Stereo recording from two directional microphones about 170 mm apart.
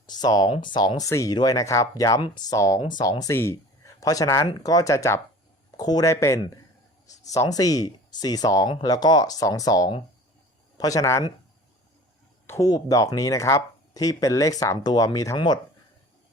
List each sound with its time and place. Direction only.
0.0 s speech: 25° left (ahead or behind)
12.5 s speech: 20° left (ahead or behind)